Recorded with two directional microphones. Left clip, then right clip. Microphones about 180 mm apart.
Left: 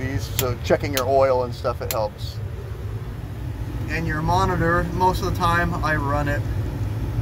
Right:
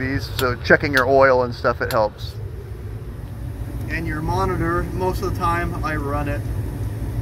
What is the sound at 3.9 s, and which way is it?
Speech, 20° left (ahead or behind).